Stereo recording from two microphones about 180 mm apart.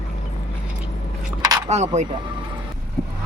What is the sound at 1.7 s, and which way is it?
Speech, 35° right (ahead or behind).